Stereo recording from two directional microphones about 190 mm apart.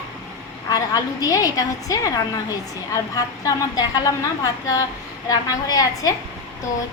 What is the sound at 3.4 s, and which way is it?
A woman's voice, 20° left (ahead or behind).